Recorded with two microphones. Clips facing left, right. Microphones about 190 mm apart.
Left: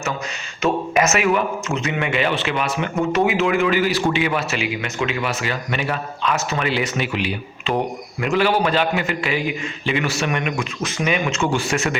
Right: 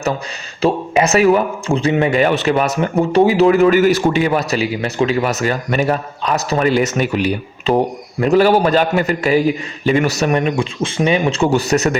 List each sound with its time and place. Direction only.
0.6 s a man's voice: 35° right (ahead or behind)